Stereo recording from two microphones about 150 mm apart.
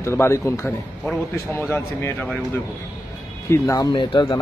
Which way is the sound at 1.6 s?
15° left (ahead or behind).